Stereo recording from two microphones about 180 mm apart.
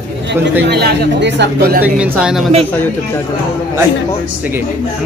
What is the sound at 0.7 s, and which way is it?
Speech, 65° right (ahead or behind).